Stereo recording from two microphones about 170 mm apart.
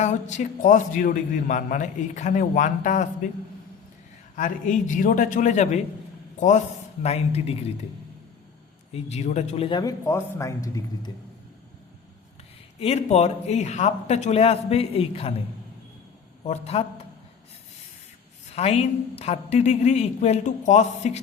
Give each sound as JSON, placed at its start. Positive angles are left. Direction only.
{"t": 0.0, "sound": "a man's voice", "side_deg": 45}
{"t": 4.4, "sound": "a man's voice", "side_deg": 50}
{"t": 7.0, "sound": "a woman's voice", "side_deg": 35}
{"t": 8.9, "sound": "speech", "side_deg": 40}
{"t": 12.8, "sound": "a woman's voice", "side_deg": 40}
{"t": 16.4, "sound": "a woman's voice", "side_deg": 35}
{"t": 18.5, "sound": "a woman's voice", "side_deg": 35}